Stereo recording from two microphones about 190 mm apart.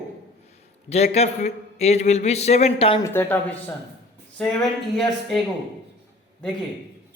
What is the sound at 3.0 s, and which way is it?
Speech, 10° left (ahead or behind).